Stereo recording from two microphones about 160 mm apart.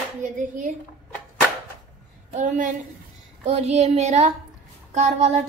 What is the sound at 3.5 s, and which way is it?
Child singing, 40° right (ahead or behind).